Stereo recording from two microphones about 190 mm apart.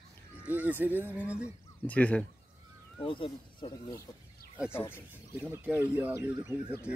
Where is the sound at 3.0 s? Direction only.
30° left (ahead or behind).